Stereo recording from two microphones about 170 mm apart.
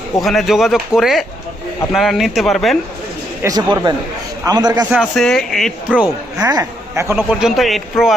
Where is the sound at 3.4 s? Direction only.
25° right (ahead or behind).